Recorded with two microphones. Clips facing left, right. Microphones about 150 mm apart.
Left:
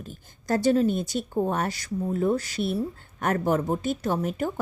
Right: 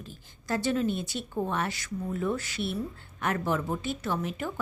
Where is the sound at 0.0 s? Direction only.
45° left (ahead or behind).